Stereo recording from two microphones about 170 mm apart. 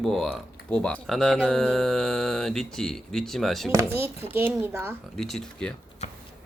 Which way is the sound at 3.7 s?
15° right (ahead or behind).